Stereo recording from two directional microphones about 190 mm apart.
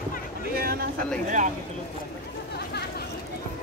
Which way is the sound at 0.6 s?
55° right (ahead or behind).